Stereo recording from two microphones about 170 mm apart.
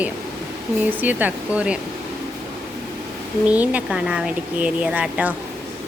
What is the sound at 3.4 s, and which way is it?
Speech, 10° right (ahead or behind).